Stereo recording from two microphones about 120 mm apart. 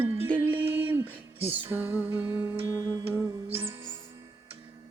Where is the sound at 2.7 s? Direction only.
25° right (ahead or behind).